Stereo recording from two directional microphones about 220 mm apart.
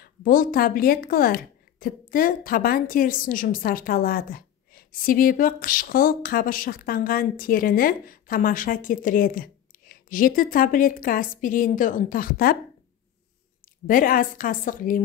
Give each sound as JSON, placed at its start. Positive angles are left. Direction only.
{"t": 0.0, "sound": "a woman's voice", "side_deg": 40}
{"t": 13.8, "sound": "a woman's voice", "side_deg": 40}